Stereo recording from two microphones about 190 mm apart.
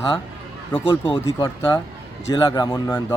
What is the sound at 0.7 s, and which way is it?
Speech, 10° left (ahead or behind).